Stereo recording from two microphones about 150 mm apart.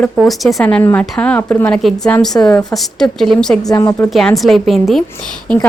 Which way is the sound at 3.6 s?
25° left (ahead or behind).